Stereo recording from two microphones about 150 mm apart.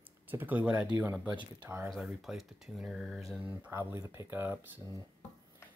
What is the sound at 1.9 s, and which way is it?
Speech, centre (ahead or behind).